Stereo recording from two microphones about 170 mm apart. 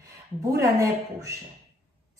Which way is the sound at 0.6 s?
20° right (ahead or behind).